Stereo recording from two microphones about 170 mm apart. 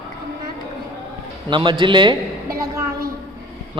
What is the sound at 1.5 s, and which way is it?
Speech, 30° right (ahead or behind).